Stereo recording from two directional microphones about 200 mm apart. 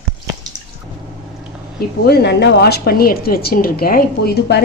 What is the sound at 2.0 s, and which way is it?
Speech, 55° left (ahead or behind).